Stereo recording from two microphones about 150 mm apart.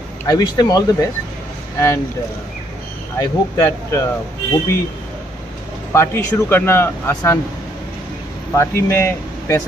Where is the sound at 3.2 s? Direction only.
20° left (ahead or behind).